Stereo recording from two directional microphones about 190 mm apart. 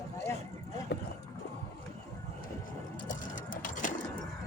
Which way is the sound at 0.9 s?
60° left (ahead or behind).